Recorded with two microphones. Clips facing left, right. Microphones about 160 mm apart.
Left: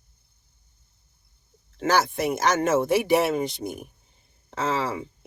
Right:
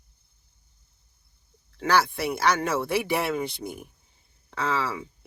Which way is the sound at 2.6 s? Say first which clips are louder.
Left 5 dB; 20° left (ahead or behind).